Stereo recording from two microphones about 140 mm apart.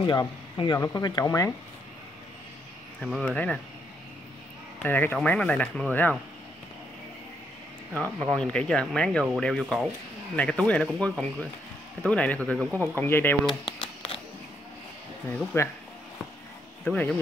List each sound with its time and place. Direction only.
0.6 s speech: 25° left (ahead or behind)
3.0 s speech: centre (ahead or behind)
4.8 s speech: 15° left (ahead or behind)
8.2 s speech: 5° left (ahead or behind)
12.9 s speech: 15° left (ahead or behind)
13.5 s a sound: 35° left (ahead or behind)
15.2 s speech: 20° left (ahead or behind)
16.8 s speech: 10° left (ahead or behind)